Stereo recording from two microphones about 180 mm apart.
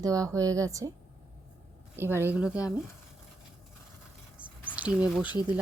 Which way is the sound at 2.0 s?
10° right (ahead or behind).